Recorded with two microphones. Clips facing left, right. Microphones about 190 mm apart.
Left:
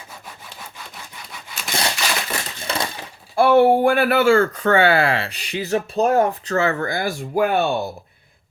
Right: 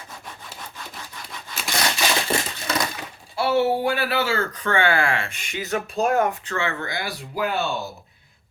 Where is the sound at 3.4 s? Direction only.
55° left (ahead or behind).